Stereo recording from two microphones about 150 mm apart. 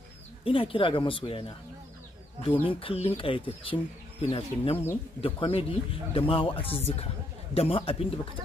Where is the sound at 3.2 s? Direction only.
35° left (ahead or behind).